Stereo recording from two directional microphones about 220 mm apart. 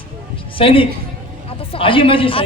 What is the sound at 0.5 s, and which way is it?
A woman's voice, 25° left (ahead or behind).